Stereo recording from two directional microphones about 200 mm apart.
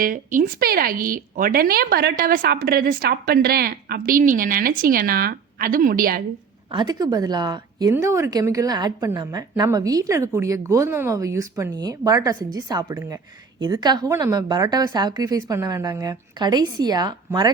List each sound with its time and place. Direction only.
0.0 s speech: 40° right (ahead or behind)
6.7 s a woman's voice: 20° right (ahead or behind)